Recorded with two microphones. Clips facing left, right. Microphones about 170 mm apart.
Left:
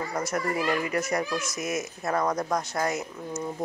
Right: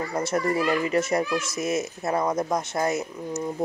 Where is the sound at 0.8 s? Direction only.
25° right (ahead or behind).